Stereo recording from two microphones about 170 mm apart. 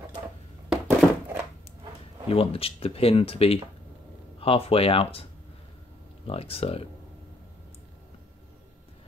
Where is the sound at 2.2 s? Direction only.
35° left (ahead or behind).